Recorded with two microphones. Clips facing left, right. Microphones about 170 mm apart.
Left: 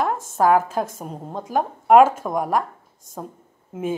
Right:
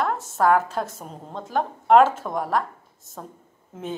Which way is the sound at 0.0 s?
15° left (ahead or behind).